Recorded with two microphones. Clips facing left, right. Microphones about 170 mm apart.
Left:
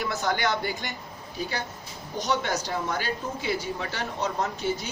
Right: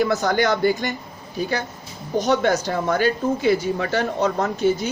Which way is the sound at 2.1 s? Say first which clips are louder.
Right 9 dB; 50° right (ahead or behind).